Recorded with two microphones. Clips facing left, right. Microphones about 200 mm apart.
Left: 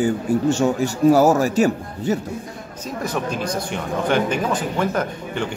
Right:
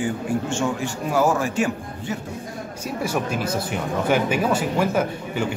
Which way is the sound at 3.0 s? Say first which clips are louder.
Left 1 dB; 10° right (ahead or behind).